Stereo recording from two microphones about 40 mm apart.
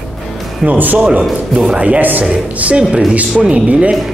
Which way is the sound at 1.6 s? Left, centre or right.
Right.